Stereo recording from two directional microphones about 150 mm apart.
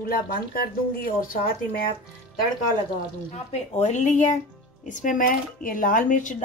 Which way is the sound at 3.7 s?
50° left (ahead or behind).